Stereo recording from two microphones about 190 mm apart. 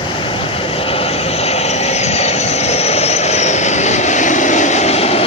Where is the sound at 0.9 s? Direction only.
30° left (ahead or behind).